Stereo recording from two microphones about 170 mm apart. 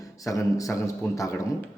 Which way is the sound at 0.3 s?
20° left (ahead or behind).